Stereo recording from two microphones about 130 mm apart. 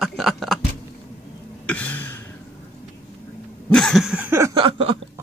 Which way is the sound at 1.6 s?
10° left (ahead or behind).